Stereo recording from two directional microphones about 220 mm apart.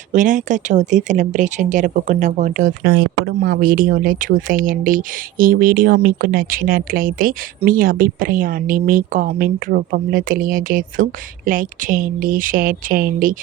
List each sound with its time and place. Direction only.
0.1 s speech: 35° right (ahead or behind)